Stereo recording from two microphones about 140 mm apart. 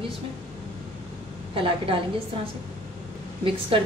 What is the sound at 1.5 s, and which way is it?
Speech, 40° right (ahead or behind).